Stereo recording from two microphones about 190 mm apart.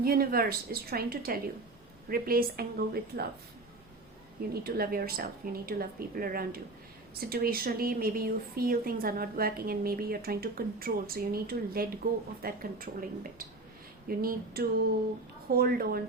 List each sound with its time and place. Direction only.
0.0 s a woman's voice: 50° right (ahead or behind)
4.6 s a woman's voice: 55° right (ahead or behind)